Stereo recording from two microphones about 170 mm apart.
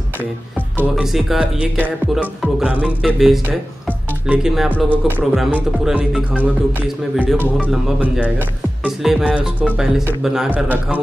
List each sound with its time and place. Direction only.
0.7 s speech: centre (ahead or behind)